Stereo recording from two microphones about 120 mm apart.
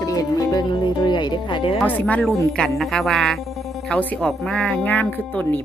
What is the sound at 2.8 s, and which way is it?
Speech, centre (ahead or behind).